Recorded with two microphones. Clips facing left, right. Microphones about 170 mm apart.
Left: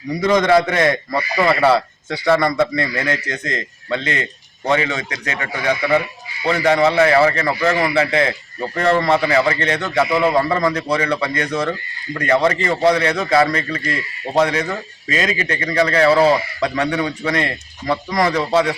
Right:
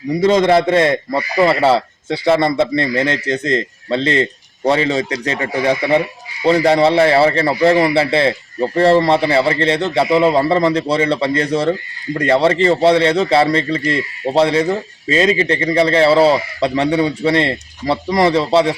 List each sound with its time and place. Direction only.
0.2 s a man's voice: 25° right (ahead or behind)